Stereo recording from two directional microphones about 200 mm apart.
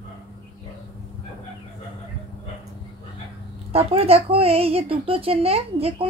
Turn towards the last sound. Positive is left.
turn(degrees=-30)  # may be behind; listen again after turning